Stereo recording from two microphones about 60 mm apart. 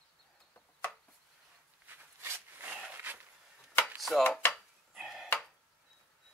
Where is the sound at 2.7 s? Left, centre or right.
Right.